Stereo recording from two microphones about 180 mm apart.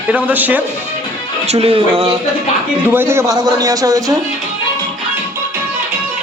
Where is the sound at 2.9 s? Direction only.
10° right (ahead or behind).